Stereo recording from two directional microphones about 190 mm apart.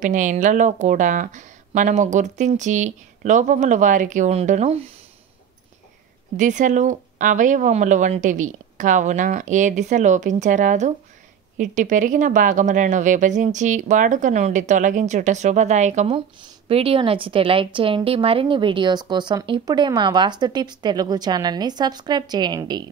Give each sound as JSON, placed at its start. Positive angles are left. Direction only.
{"t": 0.0, "sound": "speech", "side_deg": -40}
{"t": 6.3, "sound": "a woman's voice", "side_deg": -40}